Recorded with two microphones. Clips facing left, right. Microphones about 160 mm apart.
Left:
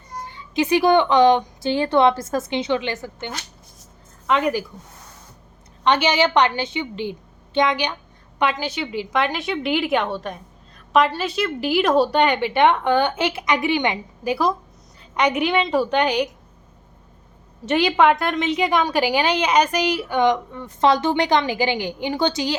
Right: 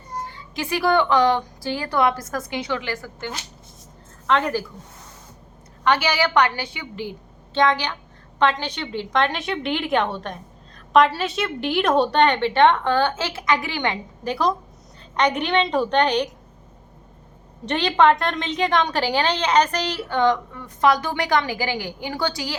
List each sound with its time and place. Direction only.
0.3 s a woman's voice: 20° left (ahead or behind)
5.8 s a woman's voice: 20° left (ahead or behind)
17.7 s a woman's voice: 10° left (ahead or behind)